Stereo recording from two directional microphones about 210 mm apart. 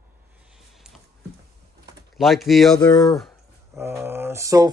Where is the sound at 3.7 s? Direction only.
10° right (ahead or behind).